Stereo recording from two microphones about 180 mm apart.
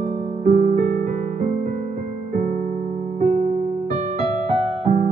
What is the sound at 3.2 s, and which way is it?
Electric piano, 35° right (ahead or behind).